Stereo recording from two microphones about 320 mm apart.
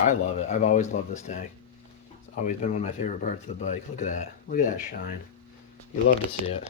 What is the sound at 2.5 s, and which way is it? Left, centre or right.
Speech, left.